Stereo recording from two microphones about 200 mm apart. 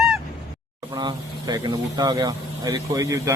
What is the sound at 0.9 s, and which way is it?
Speech, 20° right (ahead or behind).